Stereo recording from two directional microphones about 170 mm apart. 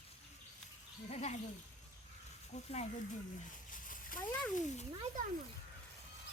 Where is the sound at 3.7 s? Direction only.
55° left (ahead or behind).